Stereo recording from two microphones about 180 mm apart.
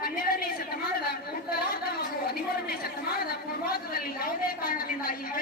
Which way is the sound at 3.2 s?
55° left (ahead or behind).